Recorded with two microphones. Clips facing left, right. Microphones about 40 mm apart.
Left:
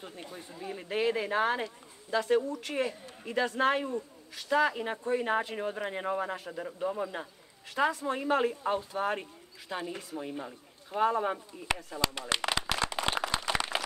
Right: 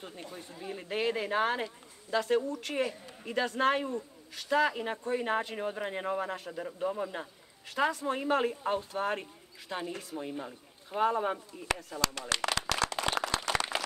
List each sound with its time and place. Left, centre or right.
0.0 s speech: centre
12.0 s a sound: left
13.1 s clapping: centre